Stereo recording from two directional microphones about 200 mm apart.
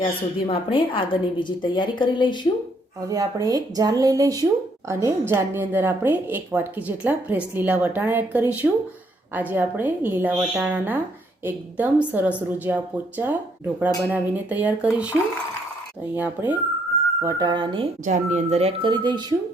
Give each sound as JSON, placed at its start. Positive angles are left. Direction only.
{"t": 0.0, "sound": "a woman's voice", "side_deg": 30}
{"t": 3.1, "sound": "a woman's voice", "side_deg": -15}
{"t": 17.2, "sound": "speech", "side_deg": -20}
{"t": 18.0, "sound": "speech", "side_deg": -35}